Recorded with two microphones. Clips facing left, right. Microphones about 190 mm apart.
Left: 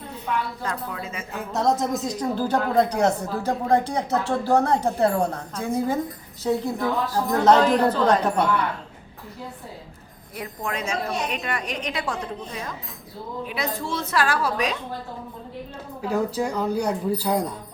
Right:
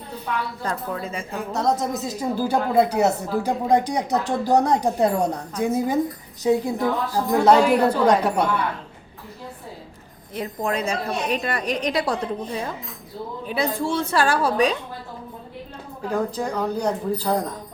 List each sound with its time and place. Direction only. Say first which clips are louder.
0.6 s a woman's voice: right 3 dB; 35° right (ahead or behind)
1.4 s speech: even; centre (ahead or behind)
10.3 s a woman's voice: right 5 dB; 30° right (ahead or behind)
16.0 s speech: even; 10° left (ahead or behind)